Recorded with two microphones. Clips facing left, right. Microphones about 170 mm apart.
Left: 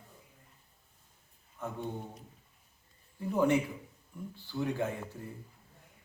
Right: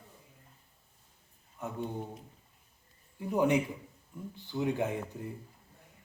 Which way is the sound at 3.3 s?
15° right (ahead or behind).